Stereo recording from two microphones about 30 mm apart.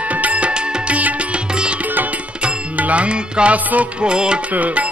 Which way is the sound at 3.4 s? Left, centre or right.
Right.